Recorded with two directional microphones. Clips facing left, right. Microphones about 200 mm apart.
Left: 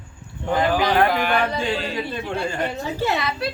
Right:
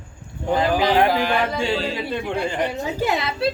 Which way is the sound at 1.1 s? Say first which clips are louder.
Right 1 dB; 30° right (ahead or behind).